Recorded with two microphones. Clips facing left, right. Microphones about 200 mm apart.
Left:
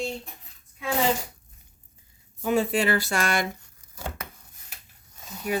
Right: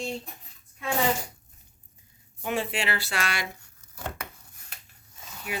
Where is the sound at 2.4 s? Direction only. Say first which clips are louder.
Left 6 dB; 40° left (ahead or behind).